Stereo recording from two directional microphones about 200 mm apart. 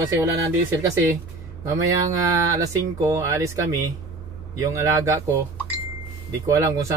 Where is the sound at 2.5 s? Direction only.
15° right (ahead or behind).